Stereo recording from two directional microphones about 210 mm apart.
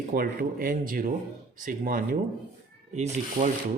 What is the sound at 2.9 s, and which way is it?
Speech, 35° right (ahead or behind).